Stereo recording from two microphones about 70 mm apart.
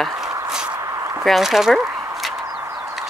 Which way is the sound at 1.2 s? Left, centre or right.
Centre.